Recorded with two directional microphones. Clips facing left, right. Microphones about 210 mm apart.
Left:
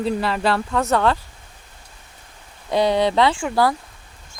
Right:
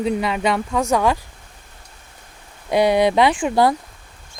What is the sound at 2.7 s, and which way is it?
Speech, 10° right (ahead or behind).